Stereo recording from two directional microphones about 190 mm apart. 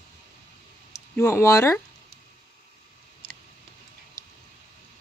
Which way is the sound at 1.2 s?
15° left (ahead or behind).